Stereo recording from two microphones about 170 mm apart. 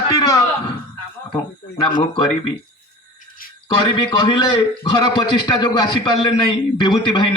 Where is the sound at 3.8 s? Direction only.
30° left (ahead or behind).